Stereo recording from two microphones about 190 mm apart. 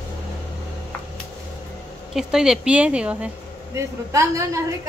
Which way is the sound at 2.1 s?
5° right (ahead or behind).